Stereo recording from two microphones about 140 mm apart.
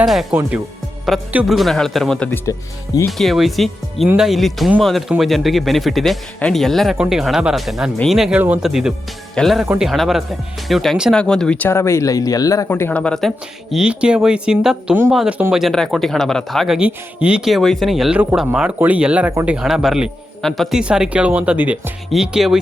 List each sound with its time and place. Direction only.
0.0 s speech: centre (ahead or behind)
2.5 s speech: 25° left (ahead or behind)
3.1 s speech: centre (ahead or behind); by 13.0 s 15° left (ahead or behind)
13.0 s speech: 5° left (ahead or behind); by 15.6 s 10° right (ahead or behind)
15.6 s speech: centre (ahead or behind)